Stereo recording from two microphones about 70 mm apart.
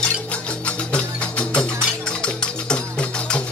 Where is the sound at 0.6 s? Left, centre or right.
Centre.